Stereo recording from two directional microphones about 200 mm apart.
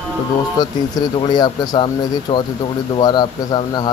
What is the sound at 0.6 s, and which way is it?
Speech, 20° left (ahead or behind).